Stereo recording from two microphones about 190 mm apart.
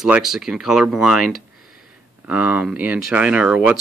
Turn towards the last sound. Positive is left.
turn(degrees=-5)  # may be behind; listen again after turning